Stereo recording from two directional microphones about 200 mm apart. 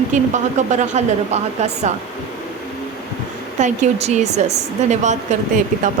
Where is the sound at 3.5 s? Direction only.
35° right (ahead or behind).